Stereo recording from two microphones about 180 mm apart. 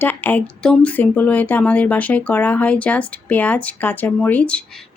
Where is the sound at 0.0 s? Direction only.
10° left (ahead or behind).